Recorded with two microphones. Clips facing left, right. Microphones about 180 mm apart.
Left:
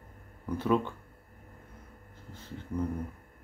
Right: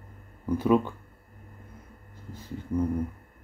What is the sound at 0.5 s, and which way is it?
Speech, 15° right (ahead or behind).